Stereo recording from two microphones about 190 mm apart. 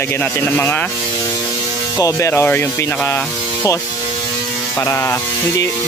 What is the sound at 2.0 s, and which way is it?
Speech, 15° left (ahead or behind).